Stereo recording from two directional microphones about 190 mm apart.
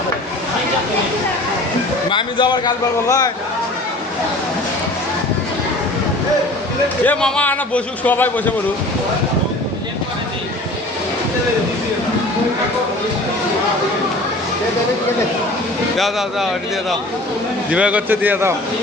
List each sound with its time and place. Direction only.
2.0 s a man's voice: 25° left (ahead or behind)
7.0 s a man's voice: 5° left (ahead or behind)
16.0 s speech: centre (ahead or behind)
17.7 s a man's voice: 5° right (ahead or behind)